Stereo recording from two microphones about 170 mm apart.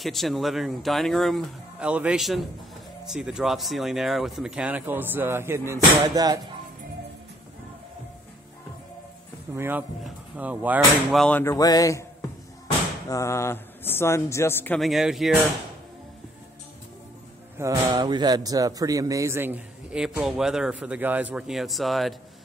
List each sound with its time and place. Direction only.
0.0 s speech: centre (ahead or behind); by 6.4 s 25° right (ahead or behind)
9.6 s speech: 10° right (ahead or behind); by 11.5 s 10° left (ahead or behind)
11.5 s a man's voice: 20° left (ahead or behind)
13.1 s speech: 15° left (ahead or behind)
14.8 s speech: centre (ahead or behind)
17.8 s speech: 25° right (ahead or behind); by 22.1 s centre (ahead or behind)